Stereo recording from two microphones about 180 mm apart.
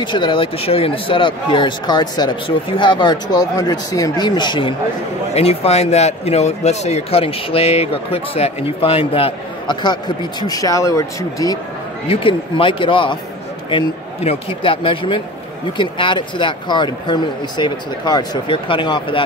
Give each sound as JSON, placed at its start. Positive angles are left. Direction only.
{"t": 0.0, "sound": "speech", "side_deg": 25}
{"t": 12.1, "sound": "speech", "side_deg": 30}